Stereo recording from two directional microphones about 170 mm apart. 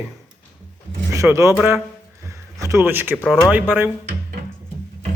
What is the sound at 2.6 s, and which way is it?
Speech, 15° right (ahead or behind).